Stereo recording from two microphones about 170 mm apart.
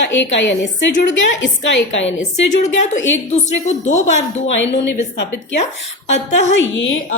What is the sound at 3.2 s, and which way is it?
Speech, 45° left (ahead or behind).